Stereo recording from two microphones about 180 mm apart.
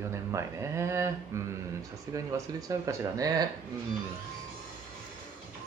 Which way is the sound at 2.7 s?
20° right (ahead or behind).